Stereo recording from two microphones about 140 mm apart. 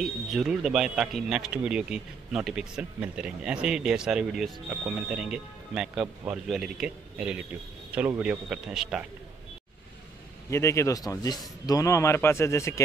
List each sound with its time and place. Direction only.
0.0 s speech: centre (ahead or behind)
10.5 s a man's voice: 20° left (ahead or behind)